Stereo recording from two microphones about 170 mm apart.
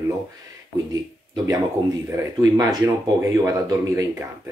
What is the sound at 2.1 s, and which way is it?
Speech, 20° right (ahead or behind).